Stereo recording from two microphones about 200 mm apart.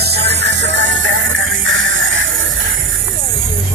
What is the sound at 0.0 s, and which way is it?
Music, 55° right (ahead or behind).